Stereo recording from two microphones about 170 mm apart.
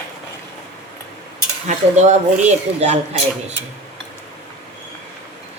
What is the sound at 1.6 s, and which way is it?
Speech, 45° right (ahead or behind).